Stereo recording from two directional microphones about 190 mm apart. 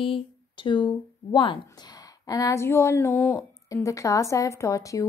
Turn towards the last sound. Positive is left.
turn(degrees=15)  # may be behind; listen again after turning